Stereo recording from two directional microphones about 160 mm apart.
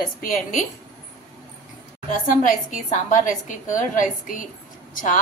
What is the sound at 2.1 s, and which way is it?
A woman's voice, 55° left (ahead or behind).